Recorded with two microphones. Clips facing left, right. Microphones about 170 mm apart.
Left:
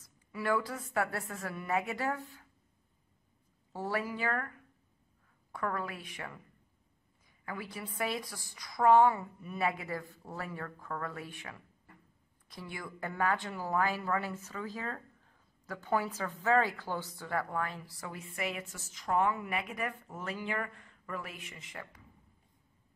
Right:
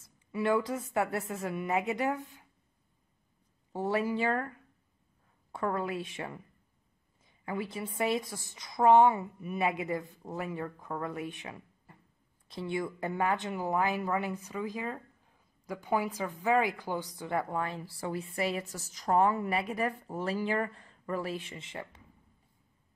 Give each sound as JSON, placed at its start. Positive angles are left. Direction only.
{"t": 0.0, "sound": "speech", "side_deg": -25}
{"t": 3.7, "sound": "speech", "side_deg": -20}